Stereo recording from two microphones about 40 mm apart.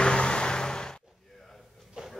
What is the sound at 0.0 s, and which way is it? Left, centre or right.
Vehicle, left.